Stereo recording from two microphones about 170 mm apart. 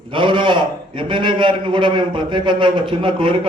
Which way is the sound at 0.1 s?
30° right (ahead or behind).